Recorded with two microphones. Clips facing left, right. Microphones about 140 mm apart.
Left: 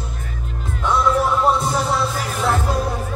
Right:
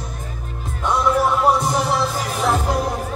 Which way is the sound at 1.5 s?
15° right (ahead or behind).